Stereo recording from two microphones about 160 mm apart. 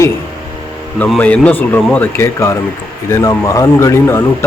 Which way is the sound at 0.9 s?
5° left (ahead or behind).